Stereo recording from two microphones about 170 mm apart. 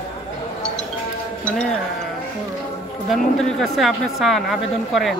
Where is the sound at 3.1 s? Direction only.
Centre (ahead or behind).